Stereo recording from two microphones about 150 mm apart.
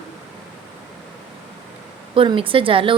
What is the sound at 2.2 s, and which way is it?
Speech, 35° right (ahead or behind).